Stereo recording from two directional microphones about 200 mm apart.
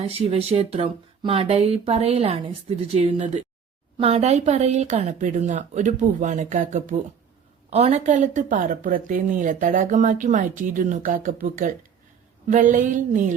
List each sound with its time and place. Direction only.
0.1 s a woman's voice: 30° right (ahead or behind)